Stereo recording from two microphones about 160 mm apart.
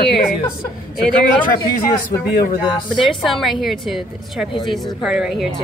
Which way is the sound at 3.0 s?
Centre (ahead or behind).